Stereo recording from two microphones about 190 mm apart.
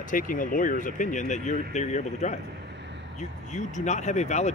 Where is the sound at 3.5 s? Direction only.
40° left (ahead or behind).